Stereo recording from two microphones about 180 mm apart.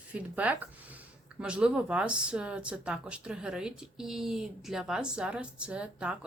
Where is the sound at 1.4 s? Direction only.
5° right (ahead or behind).